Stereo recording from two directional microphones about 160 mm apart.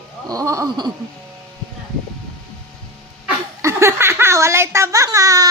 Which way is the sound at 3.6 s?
15° right (ahead or behind).